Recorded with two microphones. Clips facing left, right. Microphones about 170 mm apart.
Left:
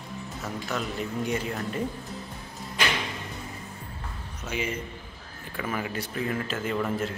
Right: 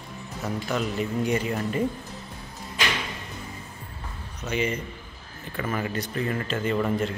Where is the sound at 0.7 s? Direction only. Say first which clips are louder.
Right 4 dB; centre (ahead or behind).